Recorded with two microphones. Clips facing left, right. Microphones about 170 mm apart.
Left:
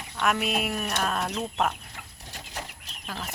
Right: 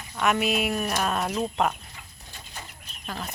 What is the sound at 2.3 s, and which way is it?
Bird flight, 90° left.